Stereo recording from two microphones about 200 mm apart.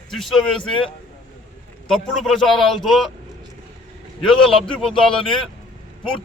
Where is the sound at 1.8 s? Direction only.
Centre (ahead or behind).